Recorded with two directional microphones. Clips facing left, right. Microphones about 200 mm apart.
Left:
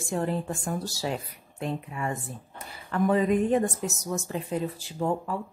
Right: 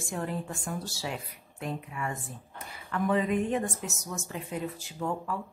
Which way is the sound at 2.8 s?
40° left (ahead or behind).